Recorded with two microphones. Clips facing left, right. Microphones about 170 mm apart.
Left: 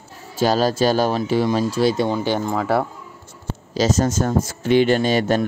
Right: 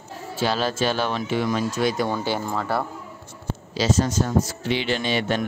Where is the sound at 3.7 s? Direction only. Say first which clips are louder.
Left 3 dB; 40° left (ahead or behind).